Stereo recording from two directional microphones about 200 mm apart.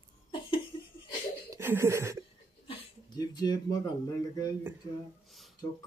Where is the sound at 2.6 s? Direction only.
25° left (ahead or behind).